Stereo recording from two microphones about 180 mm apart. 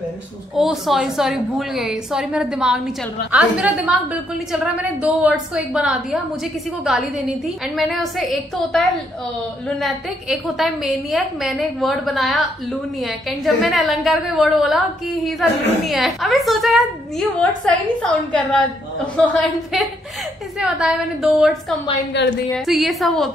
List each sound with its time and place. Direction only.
0.6 s a woman's voice: 5° right (ahead or behind)
22.2 s a woman's voice: 75° left (ahead or behind)
22.5 s a woman's voice: centre (ahead or behind)